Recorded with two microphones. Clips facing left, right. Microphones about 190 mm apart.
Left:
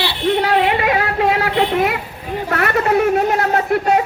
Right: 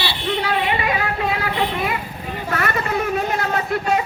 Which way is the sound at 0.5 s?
75° left (ahead or behind).